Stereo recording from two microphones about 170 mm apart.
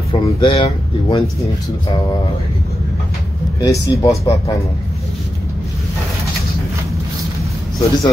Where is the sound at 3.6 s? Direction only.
20° left (ahead or behind).